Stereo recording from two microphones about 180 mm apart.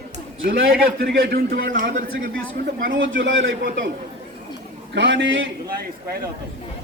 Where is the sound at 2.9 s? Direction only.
90° right.